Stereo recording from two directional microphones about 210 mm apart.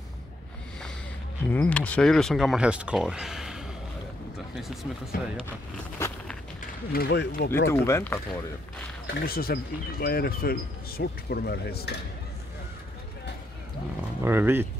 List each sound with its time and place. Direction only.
1.5 s speech: 5° left (ahead or behind)
5.9 s a sound: 15° left (ahead or behind)
6.9 s speech: 50° left (ahead or behind)
7.7 s speech: 10° left (ahead or behind)
9.0 s speech: 45° left (ahead or behind)
14.2 s speech: 10° right (ahead or behind)